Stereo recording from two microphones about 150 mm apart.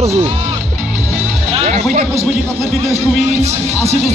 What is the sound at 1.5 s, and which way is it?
Music, 50° right (ahead or behind).